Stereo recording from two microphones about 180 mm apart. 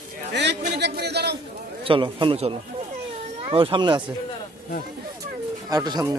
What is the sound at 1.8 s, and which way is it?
A man's voice, 30° right (ahead or behind).